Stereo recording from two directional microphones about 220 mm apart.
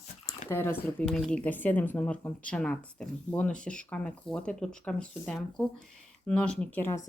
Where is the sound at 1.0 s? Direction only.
5° left (ahead or behind).